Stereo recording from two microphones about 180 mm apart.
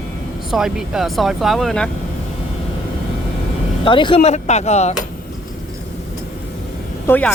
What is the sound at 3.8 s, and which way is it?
Speech, 25° left (ahead or behind).